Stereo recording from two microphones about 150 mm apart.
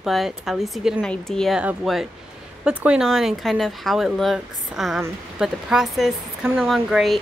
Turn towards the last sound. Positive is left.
turn(degrees=0)  # may be behind; listen again after turning